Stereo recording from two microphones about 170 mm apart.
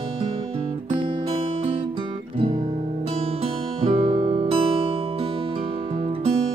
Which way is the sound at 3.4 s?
35° right (ahead or behind).